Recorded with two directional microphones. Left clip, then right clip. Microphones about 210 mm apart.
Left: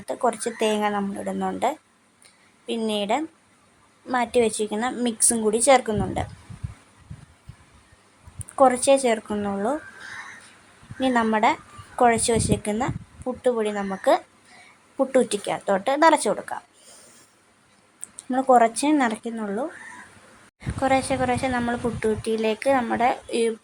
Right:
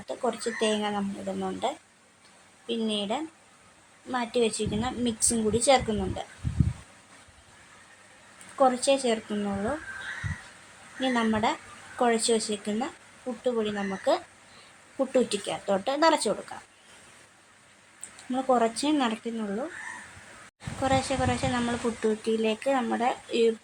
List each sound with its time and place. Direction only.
0.0 s a woman's voice: 25° left (ahead or behind)
8.5 s a woman's voice: 25° left (ahead or behind)
11.0 s a woman's voice: 25° left (ahead or behind)
18.3 s a woman's voice: 25° left (ahead or behind)
20.8 s a woman's voice: 20° left (ahead or behind)